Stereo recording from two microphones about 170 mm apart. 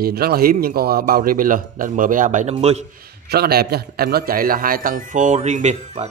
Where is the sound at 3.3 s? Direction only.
65° right (ahead or behind).